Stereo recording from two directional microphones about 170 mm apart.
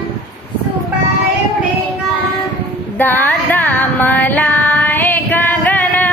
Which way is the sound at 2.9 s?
10° left (ahead or behind).